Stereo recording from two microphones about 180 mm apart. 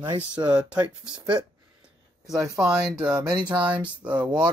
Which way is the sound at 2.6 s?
5° right (ahead or behind).